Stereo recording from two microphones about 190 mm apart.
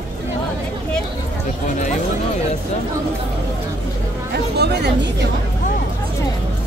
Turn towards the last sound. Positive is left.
turn(degrees=-60)  # may be behind; listen again after turning